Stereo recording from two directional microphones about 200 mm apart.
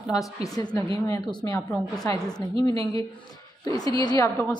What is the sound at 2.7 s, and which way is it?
Speech, 25° right (ahead or behind).